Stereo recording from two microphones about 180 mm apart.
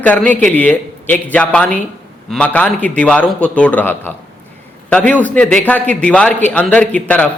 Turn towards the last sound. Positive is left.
turn(degrees=5)  # may be behind; listen again after turning